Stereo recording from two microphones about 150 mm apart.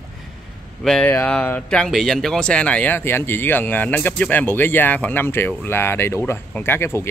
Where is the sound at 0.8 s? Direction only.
5° left (ahead or behind).